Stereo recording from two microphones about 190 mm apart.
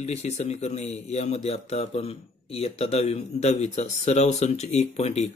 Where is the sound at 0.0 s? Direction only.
35° left (ahead or behind).